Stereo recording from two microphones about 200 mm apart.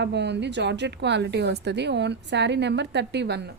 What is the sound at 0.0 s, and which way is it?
A woman's voice, 60° right (ahead or behind).